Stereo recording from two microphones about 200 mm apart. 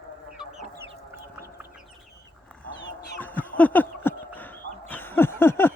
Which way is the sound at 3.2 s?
10° left (ahead or behind).